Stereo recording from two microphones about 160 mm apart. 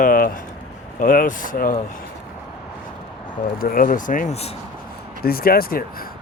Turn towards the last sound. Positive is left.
turn(degrees=65)  # may be behind; listen again after turning